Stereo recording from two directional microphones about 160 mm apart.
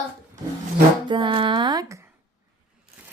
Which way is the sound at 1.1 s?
30° right (ahead or behind).